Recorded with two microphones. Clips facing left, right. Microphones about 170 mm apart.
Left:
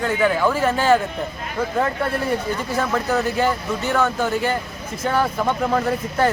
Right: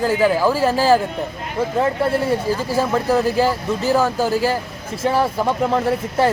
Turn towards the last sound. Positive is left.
turn(degrees=-30)  # may be behind; listen again after turning